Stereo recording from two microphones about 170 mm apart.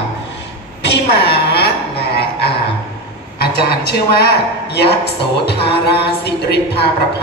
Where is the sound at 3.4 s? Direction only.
70° left (ahead or behind).